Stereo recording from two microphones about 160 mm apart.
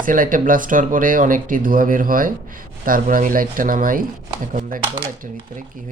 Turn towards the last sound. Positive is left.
turn(degrees=-60)  # may be behind; listen again after turning